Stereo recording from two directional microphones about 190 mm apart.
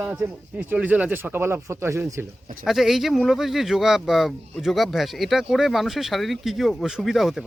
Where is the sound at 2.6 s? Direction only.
Centre (ahead or behind).